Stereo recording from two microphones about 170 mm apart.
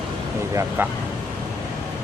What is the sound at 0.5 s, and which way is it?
Speech, 10° right (ahead or behind).